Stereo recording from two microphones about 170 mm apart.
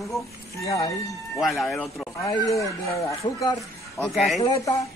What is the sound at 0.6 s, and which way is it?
Speech, 20° left (ahead or behind).